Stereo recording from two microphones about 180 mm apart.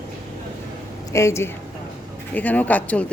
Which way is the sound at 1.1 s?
15° left (ahead or behind).